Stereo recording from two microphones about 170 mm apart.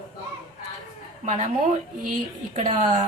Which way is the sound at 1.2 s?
45° right (ahead or behind).